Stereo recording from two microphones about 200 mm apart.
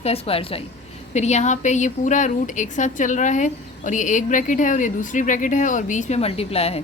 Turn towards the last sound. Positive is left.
turn(degrees=30)  # may be behind; listen again after turning